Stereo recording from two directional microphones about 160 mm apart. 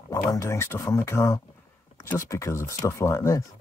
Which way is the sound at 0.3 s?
20° left (ahead or behind).